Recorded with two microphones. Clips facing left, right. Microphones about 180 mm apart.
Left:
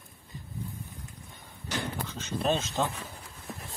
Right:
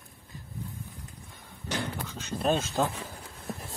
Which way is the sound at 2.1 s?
5° right (ahead or behind).